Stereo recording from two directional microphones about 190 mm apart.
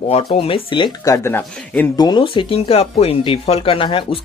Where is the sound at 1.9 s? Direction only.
20° left (ahead or behind).